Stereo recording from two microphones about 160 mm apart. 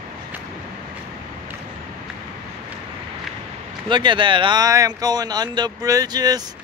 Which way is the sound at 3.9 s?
30° right (ahead or behind).